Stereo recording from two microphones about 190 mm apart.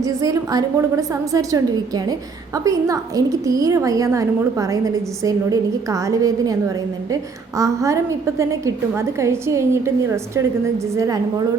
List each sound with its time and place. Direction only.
0.0 s a woman's voice: 15° right (ahead or behind)
2.6 s a woman's voice: 15° right (ahead or behind)